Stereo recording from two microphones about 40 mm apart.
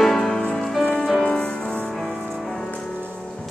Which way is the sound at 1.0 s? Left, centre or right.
Centre.